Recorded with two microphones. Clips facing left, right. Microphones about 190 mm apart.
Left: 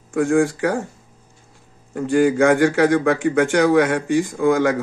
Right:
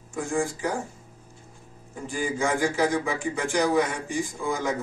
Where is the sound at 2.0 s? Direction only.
70° left (ahead or behind).